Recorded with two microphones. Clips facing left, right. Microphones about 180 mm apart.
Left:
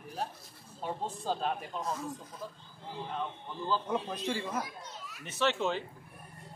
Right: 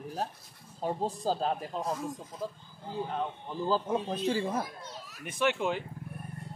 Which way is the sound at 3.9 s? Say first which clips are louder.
Right 4 dB; 20° right (ahead or behind).